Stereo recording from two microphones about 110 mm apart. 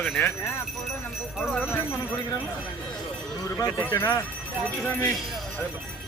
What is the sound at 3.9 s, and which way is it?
Speech, 25° left (ahead or behind).